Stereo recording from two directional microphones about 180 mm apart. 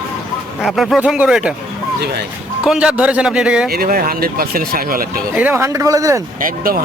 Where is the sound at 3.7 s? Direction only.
55° right (ahead or behind).